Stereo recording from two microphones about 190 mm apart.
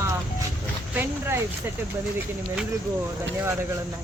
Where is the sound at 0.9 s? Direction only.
10° right (ahead or behind).